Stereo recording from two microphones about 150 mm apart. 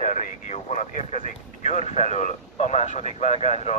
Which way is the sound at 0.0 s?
60° left (ahead or behind).